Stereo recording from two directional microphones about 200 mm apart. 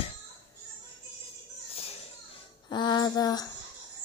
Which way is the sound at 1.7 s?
30° left (ahead or behind).